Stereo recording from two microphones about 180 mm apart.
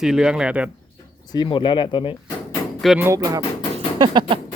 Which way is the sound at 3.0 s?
20° right (ahead or behind).